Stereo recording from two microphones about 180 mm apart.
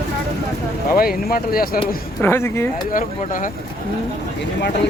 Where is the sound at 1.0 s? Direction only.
55° left (ahead or behind).